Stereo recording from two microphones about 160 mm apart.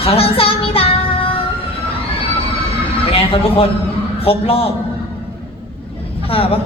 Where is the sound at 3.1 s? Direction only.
35° left (ahead or behind).